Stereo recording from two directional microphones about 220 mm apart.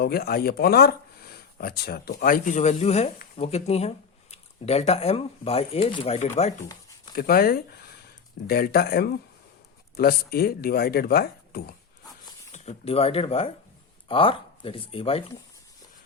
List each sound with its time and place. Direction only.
0.0 s speech: 45° left (ahead or behind)
7.2 s speech: 45° left (ahead or behind)
12.5 s speech: 30° left (ahead or behind)